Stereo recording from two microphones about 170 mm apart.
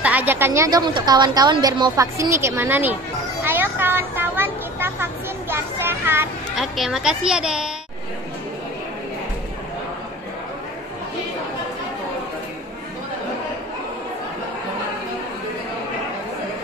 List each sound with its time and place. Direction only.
0.0 s a woman's voice: 10° right (ahead or behind)
6.6 s speech: centre (ahead or behind)